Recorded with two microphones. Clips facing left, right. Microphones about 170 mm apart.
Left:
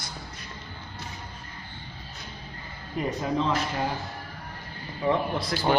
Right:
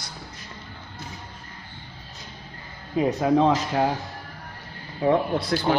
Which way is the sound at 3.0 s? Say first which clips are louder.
Right 8 dB; 60° right (ahead or behind).